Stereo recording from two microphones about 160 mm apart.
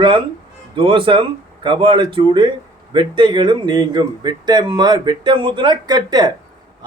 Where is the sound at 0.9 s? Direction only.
30° right (ahead or behind).